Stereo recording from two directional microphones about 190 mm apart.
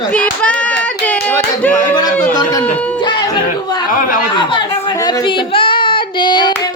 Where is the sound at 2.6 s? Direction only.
10° left (ahead or behind).